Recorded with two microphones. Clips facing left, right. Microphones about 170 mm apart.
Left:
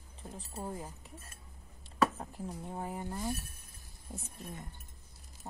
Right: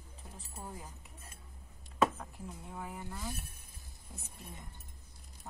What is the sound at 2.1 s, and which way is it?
Speech, 35° left (ahead or behind).